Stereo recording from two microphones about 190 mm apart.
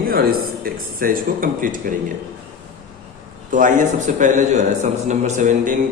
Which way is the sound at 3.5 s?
40° right (ahead or behind).